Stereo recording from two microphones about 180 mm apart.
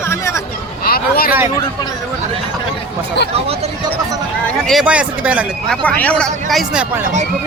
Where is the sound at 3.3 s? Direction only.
35° right (ahead or behind).